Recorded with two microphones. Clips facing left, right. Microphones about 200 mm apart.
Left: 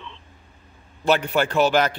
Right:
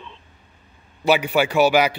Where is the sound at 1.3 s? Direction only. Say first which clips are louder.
Right 3 dB; 10° right (ahead or behind).